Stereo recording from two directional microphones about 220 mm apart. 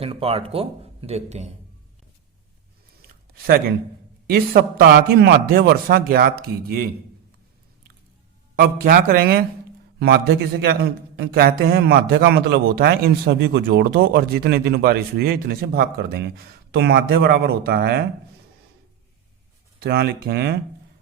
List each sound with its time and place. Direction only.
0.0 s a man's voice: 25° right (ahead or behind)
3.3 s a man's voice: 45° right (ahead or behind)
8.5 s a man's voice: 40° right (ahead or behind)
19.8 s a man's voice: 45° right (ahead or behind)